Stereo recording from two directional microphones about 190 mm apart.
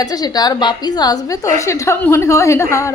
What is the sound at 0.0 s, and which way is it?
A woman's voice, 20° left (ahead or behind).